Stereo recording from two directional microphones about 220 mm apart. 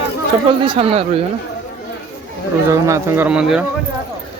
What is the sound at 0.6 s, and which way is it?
Speech, 25° right (ahead or behind).